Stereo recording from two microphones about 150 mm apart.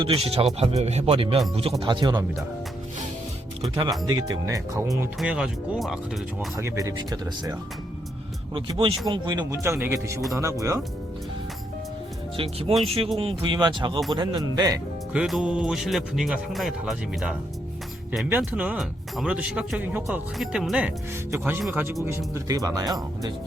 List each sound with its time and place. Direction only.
0.0 s speech: 40° right (ahead or behind)
3.6 s speech: 25° right (ahead or behind)
5.2 s speech: 5° right (ahead or behind)
6.6 s speech: 20° right (ahead or behind)
8.5 s speech: 35° right (ahead or behind)
12.4 s speech: 40° right (ahead or behind)
15.1 s speech: 5° right (ahead or behind)
22.4 s speech: 25° right (ahead or behind)